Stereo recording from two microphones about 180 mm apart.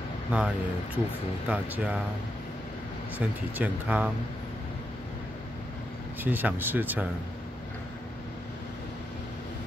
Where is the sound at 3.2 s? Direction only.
10° right (ahead or behind).